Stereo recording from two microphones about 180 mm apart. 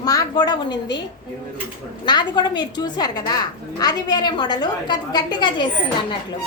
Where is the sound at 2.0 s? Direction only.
25° left (ahead or behind).